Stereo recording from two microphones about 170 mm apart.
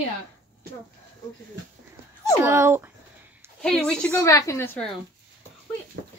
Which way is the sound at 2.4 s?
15° right (ahead or behind).